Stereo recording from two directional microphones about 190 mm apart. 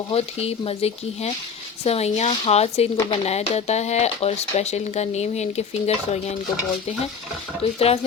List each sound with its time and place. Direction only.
0.1 s speech: 30° left (ahead or behind)
7.6 s speech: 30° left (ahead or behind)